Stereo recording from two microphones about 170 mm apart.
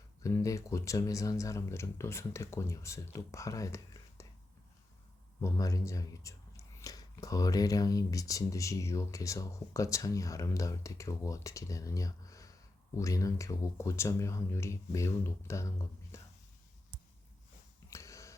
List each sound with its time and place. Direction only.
0.2 s speech: 20° left (ahead or behind)
4.2 s whispering: 15° left (ahead or behind)
5.4 s speech: 20° left (ahead or behind)
16.1 s whispering: 15° left (ahead or behind)
17.9 s a sound: 20° left (ahead or behind)